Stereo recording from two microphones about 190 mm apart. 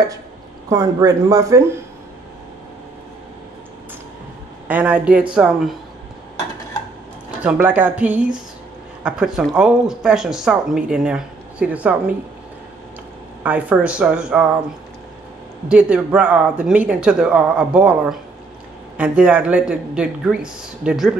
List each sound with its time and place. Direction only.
0.7 s speech: 20° right (ahead or behind)
4.6 s speech: 10° right (ahead or behind)
7.4 s speech: 10° right (ahead or behind)
13.4 s speech: 5° right (ahead or behind)
15.7 s speech: 5° right (ahead or behind)